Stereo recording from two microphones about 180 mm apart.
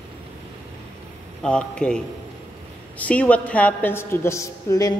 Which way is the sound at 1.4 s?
5° left (ahead or behind).